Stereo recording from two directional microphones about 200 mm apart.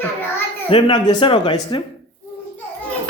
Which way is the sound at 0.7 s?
25° left (ahead or behind).